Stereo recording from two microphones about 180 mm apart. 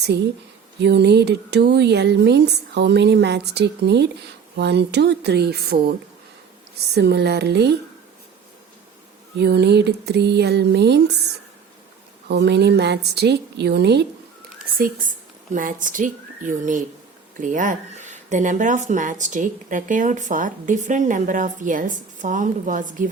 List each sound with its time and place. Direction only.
0.8 s speech: 70° right (ahead or behind)
6.9 s speech: 65° right (ahead or behind)
9.4 s speech: 65° right (ahead or behind)
12.3 s speech: 70° right (ahead or behind)
14.8 s speech: 50° right (ahead or behind)